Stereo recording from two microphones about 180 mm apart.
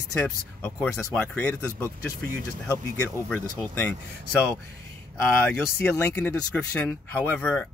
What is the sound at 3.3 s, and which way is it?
Speech, 10° left (ahead or behind).